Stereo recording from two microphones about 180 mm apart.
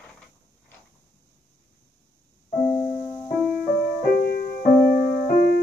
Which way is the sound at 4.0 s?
60° left (ahead or behind).